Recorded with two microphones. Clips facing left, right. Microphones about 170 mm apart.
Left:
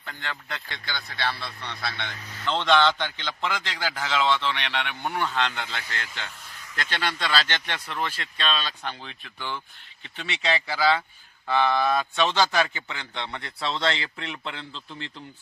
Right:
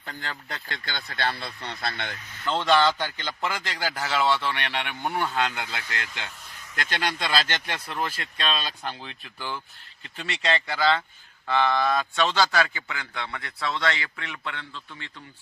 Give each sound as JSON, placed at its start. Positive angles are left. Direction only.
{"t": 0.0, "sound": "speech", "side_deg": -40}
{"t": 0.9, "sound": "speech", "side_deg": -50}
{"t": 2.5, "sound": "a man's voice", "side_deg": -5}